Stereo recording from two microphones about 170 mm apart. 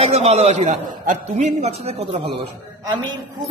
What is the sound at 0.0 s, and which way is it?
A man's voice, 40° right (ahead or behind).